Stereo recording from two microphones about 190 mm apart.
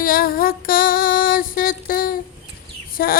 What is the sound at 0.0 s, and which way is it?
Female singing, 50° left (ahead or behind).